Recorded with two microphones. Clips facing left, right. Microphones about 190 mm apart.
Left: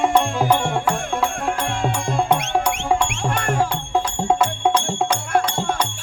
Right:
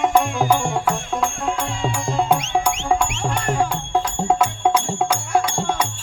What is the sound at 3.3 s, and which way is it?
Music, 60° left (ahead or behind).